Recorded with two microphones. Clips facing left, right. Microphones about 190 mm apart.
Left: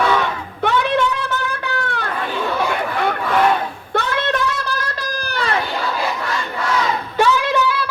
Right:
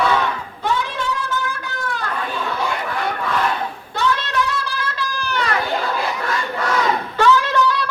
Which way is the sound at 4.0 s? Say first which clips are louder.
Even; 55° left (ahead or behind).